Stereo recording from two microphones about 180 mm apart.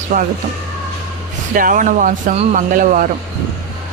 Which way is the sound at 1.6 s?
50° right (ahead or behind).